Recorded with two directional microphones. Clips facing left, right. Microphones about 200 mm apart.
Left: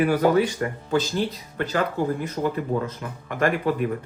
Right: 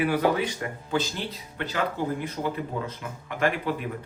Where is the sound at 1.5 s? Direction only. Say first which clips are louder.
Left 5 dB; 45° left (ahead or behind).